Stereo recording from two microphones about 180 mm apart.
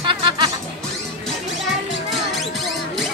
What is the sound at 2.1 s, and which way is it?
Music, centre (ahead or behind).